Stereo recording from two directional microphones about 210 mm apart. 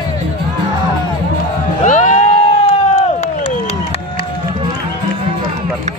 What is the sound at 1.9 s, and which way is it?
Music, 35° left (ahead or behind).